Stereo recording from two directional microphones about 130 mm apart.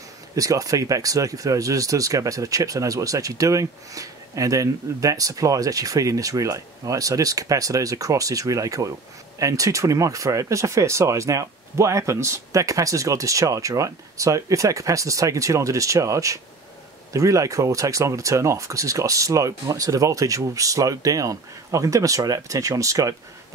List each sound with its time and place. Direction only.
0.4 s speech: 25° right (ahead or behind)